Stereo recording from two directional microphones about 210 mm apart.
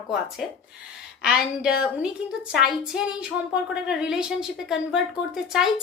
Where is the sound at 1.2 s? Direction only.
5° right (ahead or behind).